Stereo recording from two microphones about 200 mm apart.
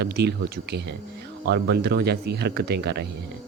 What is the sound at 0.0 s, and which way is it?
A man's voice, 55° right (ahead or behind).